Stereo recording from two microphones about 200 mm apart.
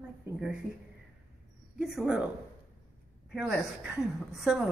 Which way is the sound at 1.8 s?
5° right (ahead or behind).